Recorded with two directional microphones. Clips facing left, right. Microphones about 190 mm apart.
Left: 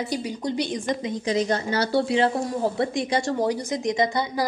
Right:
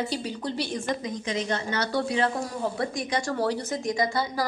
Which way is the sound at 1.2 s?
35° left (ahead or behind).